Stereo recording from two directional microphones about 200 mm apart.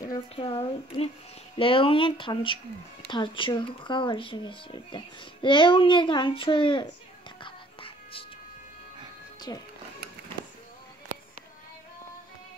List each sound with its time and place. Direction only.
0.0 s speech: 20° left (ahead or behind)
7.4 s music: 25° left (ahead or behind)
9.5 s speech: 20° left (ahead or behind)